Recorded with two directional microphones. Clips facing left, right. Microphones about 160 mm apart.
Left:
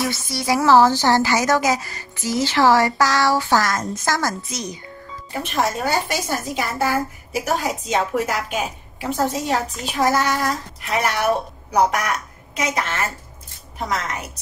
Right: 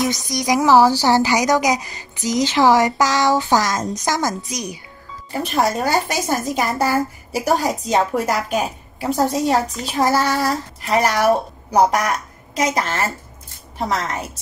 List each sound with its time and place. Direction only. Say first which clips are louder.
0.3 s speech: right 1 dB; 15° right (ahead or behind)
5.4 s a woman's voice: right 3 dB; 35° right (ahead or behind)